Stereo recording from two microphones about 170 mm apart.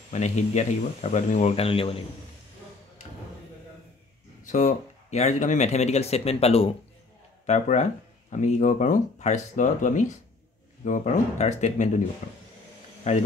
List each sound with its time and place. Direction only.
0.1 s speech: 45° left (ahead or behind)
4.5 s speech: 45° left (ahead or behind)
13.0 s speech: 45° left (ahead or behind)